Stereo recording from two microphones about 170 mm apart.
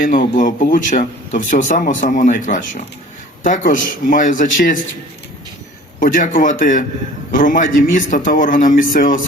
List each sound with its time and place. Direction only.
0.0 s speech: 55° left (ahead or behind)
6.0 s speech: 55° left (ahead or behind)